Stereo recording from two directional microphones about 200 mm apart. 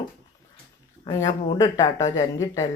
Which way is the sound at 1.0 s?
20° left (ahead or behind).